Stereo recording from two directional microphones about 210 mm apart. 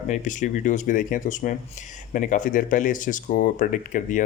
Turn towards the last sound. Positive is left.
turn(degrees=40)  # may be behind; listen again after turning